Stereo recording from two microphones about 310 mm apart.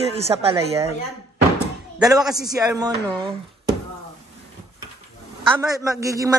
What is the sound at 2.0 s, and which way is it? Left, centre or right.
Speech, centre.